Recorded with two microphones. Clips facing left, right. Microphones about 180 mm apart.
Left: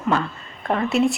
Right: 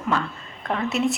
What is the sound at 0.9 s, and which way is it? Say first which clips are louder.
Speech: left 4 dB; centre (ahead or behind).